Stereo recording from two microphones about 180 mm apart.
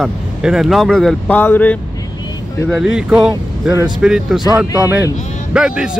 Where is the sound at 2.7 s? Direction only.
5° right (ahead or behind).